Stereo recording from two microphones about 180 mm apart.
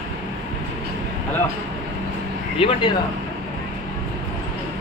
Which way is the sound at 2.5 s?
30° left (ahead or behind).